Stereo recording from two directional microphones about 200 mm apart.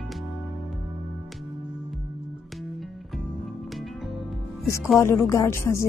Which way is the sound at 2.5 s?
Centre (ahead or behind).